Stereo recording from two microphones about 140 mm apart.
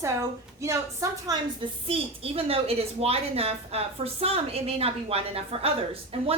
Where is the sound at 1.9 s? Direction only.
45° right (ahead or behind).